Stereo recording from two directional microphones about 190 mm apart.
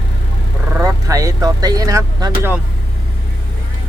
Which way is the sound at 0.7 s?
15° right (ahead or behind).